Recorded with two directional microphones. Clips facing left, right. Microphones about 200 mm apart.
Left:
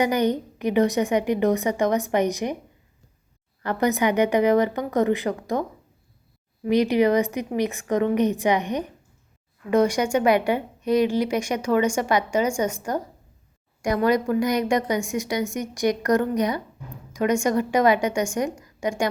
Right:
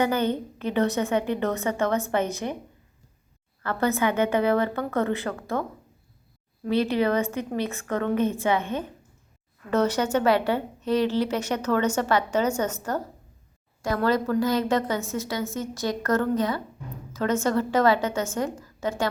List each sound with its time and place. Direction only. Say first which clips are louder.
0.0 s a woman's voice: left 2 dB; 15° left (ahead or behind)
3.6 s a woman's voice: left 2 dB; 15° left (ahead or behind)
6.7 s a woman's voice: left 4 dB; 15° left (ahead or behind)